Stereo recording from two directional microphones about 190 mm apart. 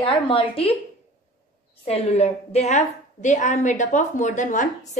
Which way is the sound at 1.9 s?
35° left (ahead or behind).